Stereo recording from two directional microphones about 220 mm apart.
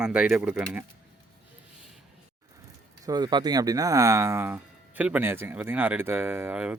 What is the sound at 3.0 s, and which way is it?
Speech, 20° right (ahead or behind).